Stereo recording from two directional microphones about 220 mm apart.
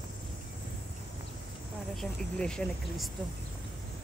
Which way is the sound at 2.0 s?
5° left (ahead or behind).